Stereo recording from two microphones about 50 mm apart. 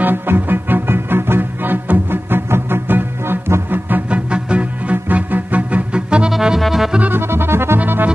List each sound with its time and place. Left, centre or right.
0.0 s music: right
4.1 s music: right
4.9 s music: right
6.6 s accordion: centre
7.2 s music: right
7.8 s music: right